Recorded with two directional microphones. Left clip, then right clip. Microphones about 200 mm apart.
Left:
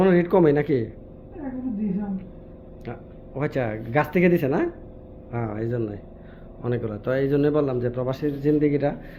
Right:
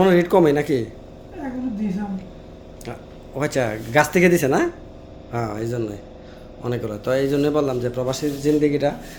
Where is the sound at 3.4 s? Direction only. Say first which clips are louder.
Right 4 dB; 20° right (ahead or behind).